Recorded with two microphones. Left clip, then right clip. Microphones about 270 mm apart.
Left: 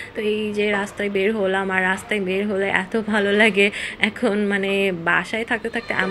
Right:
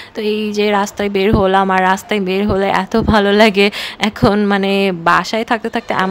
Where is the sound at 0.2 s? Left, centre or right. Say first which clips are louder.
Right 5 dB; right.